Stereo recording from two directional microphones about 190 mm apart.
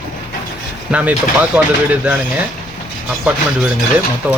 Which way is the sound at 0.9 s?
10° right (ahead or behind).